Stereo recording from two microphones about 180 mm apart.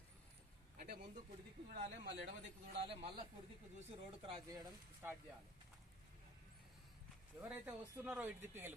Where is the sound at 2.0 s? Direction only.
75° right (ahead or behind).